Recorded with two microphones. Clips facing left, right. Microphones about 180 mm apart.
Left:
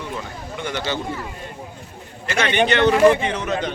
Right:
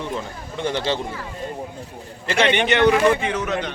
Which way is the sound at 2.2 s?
25° right (ahead or behind).